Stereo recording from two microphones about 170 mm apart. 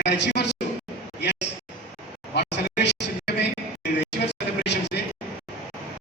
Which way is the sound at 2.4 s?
85° left.